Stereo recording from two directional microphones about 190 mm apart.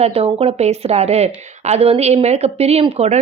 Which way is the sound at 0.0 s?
35° right (ahead or behind).